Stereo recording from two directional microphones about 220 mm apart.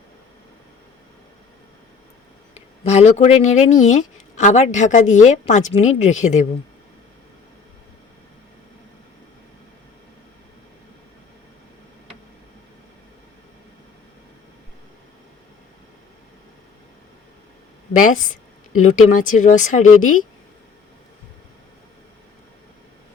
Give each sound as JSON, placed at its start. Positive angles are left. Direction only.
{"t": 2.8, "sound": "speech", "side_deg": 30}
{"t": 18.8, "sound": "speech", "side_deg": 35}